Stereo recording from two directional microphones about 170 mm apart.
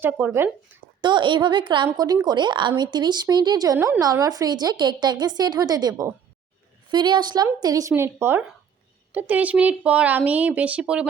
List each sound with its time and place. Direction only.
0.0 s speech: 10° right (ahead or behind)
1.0 s speech: 30° right (ahead or behind)
6.9 s speech: 25° right (ahead or behind); by 11.1 s 5° right (ahead or behind)